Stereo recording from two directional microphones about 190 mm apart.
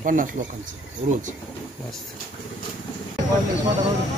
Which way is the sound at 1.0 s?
45° right (ahead or behind).